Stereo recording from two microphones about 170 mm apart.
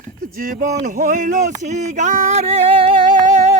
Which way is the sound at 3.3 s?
45° right (ahead or behind).